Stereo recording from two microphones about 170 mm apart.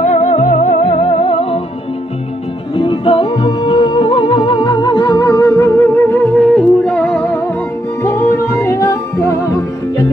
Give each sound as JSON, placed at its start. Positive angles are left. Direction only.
{"t": 0.0, "sound": "music", "side_deg": 45}
{"t": 2.7, "sound": "music", "side_deg": 30}
{"t": 8.0, "sound": "music", "side_deg": 15}